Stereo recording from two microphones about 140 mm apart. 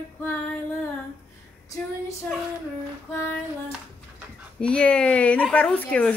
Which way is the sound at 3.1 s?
15° left (ahead or behind).